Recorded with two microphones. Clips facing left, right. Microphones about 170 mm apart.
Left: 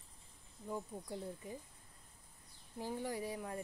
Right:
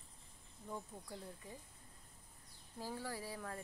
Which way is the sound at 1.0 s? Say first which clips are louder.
Left 6 dB; 20° left (ahead or behind).